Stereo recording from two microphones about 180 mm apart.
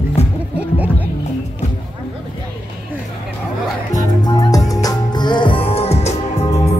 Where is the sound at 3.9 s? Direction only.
20° left (ahead or behind); by 6.6 s 35° left (ahead or behind).